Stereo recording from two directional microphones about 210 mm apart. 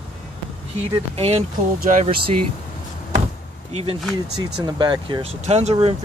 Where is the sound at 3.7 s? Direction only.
25° right (ahead or behind).